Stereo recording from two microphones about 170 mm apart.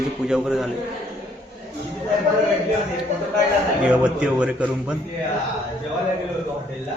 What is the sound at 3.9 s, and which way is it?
Speech, 5° right (ahead or behind).